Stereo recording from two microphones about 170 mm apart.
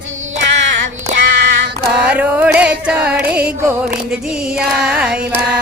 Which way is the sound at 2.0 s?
10° right (ahead or behind).